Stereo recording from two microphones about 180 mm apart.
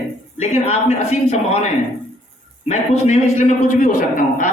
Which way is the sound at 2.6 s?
40° left (ahead or behind).